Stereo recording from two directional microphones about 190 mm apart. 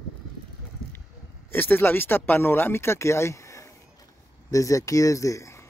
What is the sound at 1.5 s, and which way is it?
Speech, 10° left (ahead or behind).